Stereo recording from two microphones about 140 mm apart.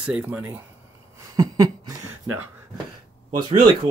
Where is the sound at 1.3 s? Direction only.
25° right (ahead or behind).